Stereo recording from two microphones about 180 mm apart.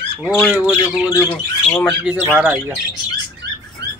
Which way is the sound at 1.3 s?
5° left (ahead or behind).